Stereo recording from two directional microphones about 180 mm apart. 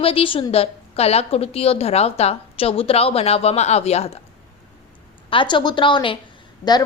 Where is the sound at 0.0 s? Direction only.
30° left (ahead or behind).